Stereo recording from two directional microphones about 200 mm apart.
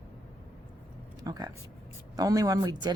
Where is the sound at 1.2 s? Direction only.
20° right (ahead or behind).